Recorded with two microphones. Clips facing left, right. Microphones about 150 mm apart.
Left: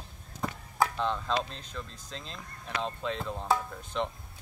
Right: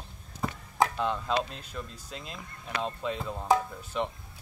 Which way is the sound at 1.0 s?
10° right (ahead or behind).